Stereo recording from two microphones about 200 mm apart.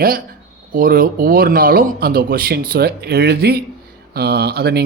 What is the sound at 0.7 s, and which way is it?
Speech, 45° right (ahead or behind).